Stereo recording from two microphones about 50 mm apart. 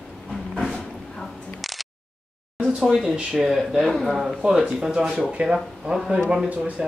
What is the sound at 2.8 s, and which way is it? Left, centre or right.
Speech, centre.